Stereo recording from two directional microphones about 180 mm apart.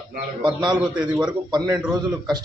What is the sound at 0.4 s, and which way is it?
Speech, 25° right (ahead or behind).